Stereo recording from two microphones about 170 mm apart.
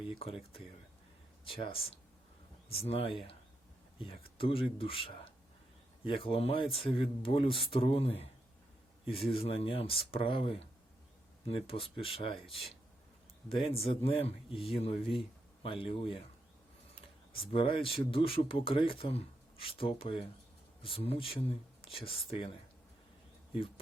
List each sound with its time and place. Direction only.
1.5 s speech: 30° left (ahead or behind)
16.9 s a sound: 30° left (ahead or behind)
18.1 s speech: 30° left (ahead or behind)